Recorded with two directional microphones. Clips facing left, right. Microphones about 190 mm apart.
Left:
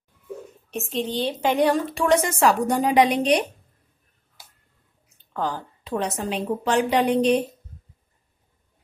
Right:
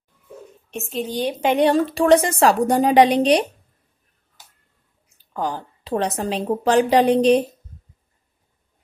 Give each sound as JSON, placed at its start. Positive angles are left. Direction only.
{"t": 0.7, "sound": "a woman's voice", "side_deg": 0}
{"t": 5.9, "sound": "a woman's voice", "side_deg": -35}